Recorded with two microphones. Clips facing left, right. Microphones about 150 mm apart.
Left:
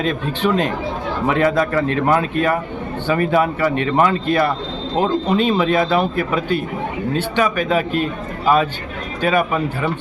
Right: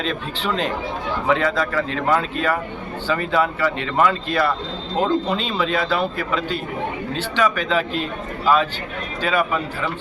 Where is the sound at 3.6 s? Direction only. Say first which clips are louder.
Left 4 dB; 50° left (ahead or behind).